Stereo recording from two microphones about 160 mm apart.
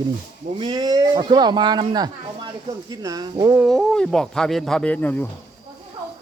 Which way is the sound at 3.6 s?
Centre (ahead or behind).